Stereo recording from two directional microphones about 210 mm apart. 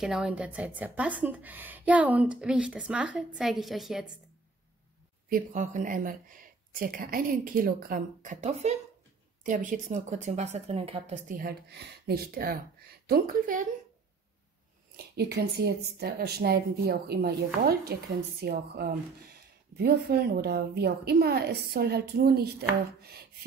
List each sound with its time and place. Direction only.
0.0 s a woman's voice: centre (ahead or behind)
5.3 s a woman's voice: 35° right (ahead or behind)
15.0 s a woman's voice: 50° right (ahead or behind)